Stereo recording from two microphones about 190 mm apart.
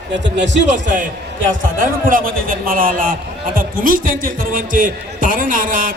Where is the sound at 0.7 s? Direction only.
40° right (ahead or behind).